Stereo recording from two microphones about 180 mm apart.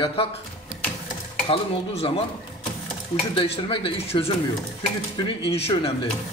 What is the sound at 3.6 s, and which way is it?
Speech, 30° left (ahead or behind).